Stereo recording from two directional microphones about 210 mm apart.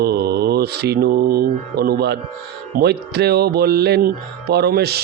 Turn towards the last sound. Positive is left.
turn(degrees=-50)  # may be behind; listen again after turning